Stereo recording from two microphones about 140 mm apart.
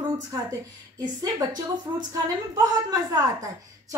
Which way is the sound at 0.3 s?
25° right (ahead or behind).